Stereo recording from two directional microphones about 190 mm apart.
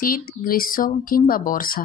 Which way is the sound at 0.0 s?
50° left (ahead or behind).